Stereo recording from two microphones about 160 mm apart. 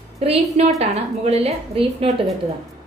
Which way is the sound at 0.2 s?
40° right (ahead or behind).